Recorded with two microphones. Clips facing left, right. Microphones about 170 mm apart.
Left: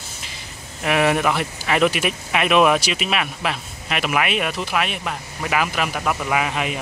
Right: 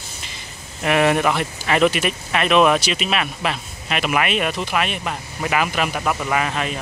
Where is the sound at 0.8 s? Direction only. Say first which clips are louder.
Right 1 dB; centre (ahead or behind).